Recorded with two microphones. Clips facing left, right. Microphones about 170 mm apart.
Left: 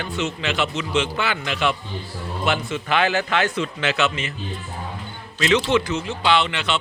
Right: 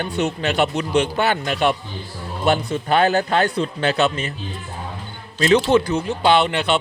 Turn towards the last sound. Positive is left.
turn(degrees=-50)  # may be behind; listen again after turning